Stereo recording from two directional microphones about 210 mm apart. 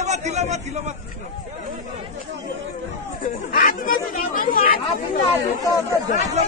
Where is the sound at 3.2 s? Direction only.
40° left (ahead or behind).